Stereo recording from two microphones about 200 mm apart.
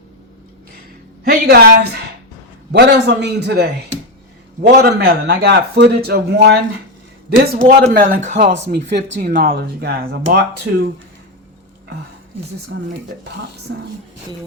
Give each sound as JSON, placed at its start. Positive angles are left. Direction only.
{"t": 1.2, "sound": "a woman's voice", "side_deg": -50}
{"t": 2.7, "sound": "a man's voice", "side_deg": -55}
{"t": 8.6, "sound": "a man's voice", "side_deg": -55}
{"t": 12.7, "sound": "a man's voice", "side_deg": -55}
{"t": 13.7, "sound": "speech", "side_deg": -70}